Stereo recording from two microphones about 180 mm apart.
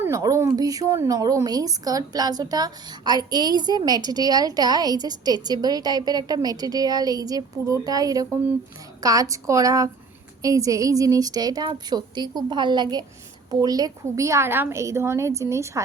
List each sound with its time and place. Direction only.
0.0 s a woman's voice: 15° right (ahead or behind)